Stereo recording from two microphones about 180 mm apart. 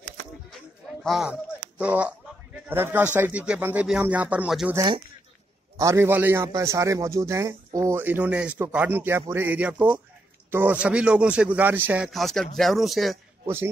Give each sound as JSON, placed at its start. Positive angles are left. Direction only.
{"t": 1.0, "sound": "speech", "side_deg": -5}
{"t": 4.7, "sound": "a man's voice", "side_deg": -25}